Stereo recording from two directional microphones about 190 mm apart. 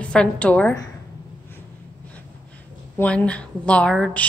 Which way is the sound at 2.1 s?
5° left (ahead or behind).